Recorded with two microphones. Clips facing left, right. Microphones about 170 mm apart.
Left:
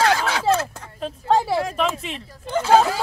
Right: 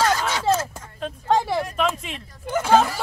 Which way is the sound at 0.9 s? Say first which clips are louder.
Left 1 dB; 5° left (ahead or behind).